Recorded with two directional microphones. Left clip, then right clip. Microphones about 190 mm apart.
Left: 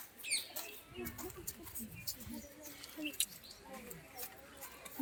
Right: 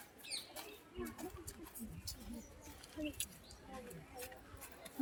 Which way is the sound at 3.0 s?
45° right (ahead or behind).